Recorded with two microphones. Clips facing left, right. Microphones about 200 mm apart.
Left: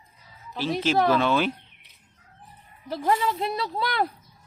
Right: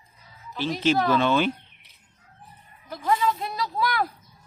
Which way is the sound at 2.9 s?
30° left (ahead or behind).